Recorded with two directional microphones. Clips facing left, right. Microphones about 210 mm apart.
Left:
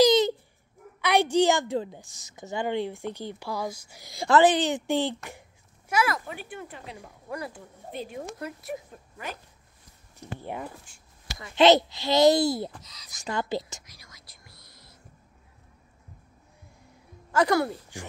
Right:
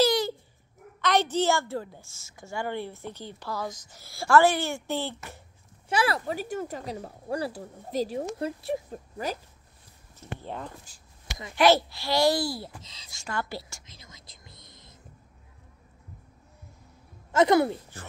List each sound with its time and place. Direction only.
0.0 s dog: 20° left (ahead or behind)
1.0 s a woman's voice: 10° left (ahead or behind)
5.9 s speech: 30° right (ahead or behind)
10.1 s a woman's voice: 15° left (ahead or behind)
11.2 s a sound: 20° right (ahead or behind)
11.5 s a child's voice: 20° left (ahead or behind)
12.8 s a woman's voice: 25° right (ahead or behind)
13.1 s a child's voice: 20° left (ahead or behind)
13.8 s whispering: 25° right (ahead or behind)
17.3 s a woman's voice: 20° right (ahead or behind)
17.9 s speech: 15° left (ahead or behind)